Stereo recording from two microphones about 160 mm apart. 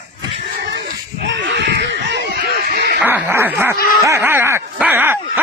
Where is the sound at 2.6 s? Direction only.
75° right (ahead or behind).